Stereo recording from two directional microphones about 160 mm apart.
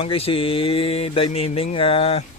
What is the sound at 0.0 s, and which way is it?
Mantra, 35° left (ahead or behind).